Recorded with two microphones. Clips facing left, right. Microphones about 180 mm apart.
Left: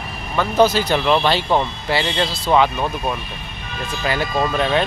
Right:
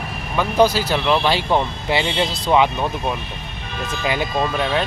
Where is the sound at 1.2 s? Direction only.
15° right (ahead or behind).